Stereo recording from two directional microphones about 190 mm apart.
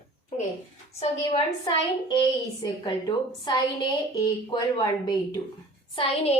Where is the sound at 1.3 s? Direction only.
25° left (ahead or behind).